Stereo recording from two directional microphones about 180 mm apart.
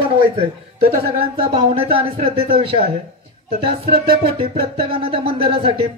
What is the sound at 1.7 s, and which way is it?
Speech, 30° right (ahead or behind).